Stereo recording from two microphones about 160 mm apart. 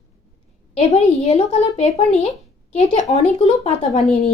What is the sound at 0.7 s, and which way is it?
Speech, 40° left (ahead or behind).